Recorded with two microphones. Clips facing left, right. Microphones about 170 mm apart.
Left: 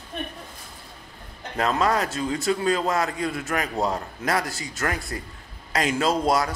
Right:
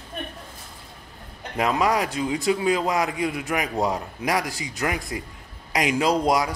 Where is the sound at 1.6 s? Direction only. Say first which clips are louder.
Right 1 dB; 15° right (ahead or behind).